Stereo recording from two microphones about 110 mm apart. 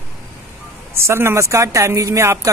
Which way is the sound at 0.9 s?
25° right (ahead or behind).